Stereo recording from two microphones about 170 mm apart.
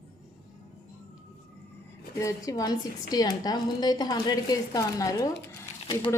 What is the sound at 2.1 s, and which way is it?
A woman's voice, 20° left (ahead or behind).